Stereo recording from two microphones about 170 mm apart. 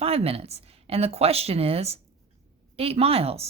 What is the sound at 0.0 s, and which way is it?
A woman's voice, 35° right (ahead or behind).